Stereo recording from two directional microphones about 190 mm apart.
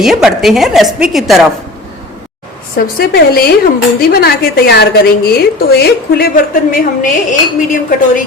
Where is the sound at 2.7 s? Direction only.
50° left (ahead or behind).